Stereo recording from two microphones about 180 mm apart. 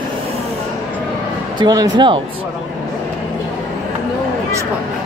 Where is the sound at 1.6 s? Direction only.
25° right (ahead or behind).